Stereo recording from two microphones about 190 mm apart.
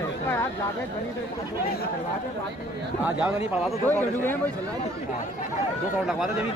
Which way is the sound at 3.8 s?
10° left (ahead or behind).